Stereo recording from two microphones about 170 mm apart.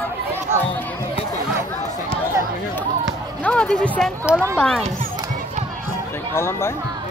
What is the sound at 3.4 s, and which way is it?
Speech, 5° left (ahead or behind).